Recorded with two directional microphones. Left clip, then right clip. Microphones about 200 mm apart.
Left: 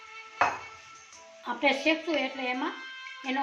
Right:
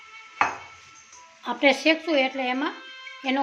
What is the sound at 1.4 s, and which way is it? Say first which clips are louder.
Speech: right 6 dB; 60° right (ahead or behind).